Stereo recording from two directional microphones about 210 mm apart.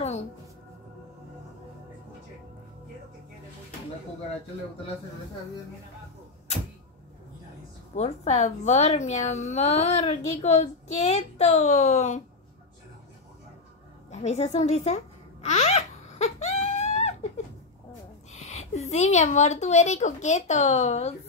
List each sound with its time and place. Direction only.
7.9 s a woman's voice: 30° left (ahead or behind)
14.1 s a woman's voice: 30° left (ahead or behind)
15.4 s wail: 30° left (ahead or behind)
18.3 s a woman's voice: 35° left (ahead or behind)